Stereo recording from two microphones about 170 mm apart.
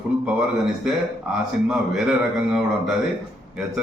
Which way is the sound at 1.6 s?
5° right (ahead or behind).